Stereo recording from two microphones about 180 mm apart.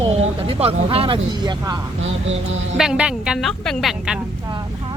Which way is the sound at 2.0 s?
90° right.